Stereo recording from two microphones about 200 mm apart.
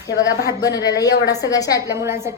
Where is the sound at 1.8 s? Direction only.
15° right (ahead or behind).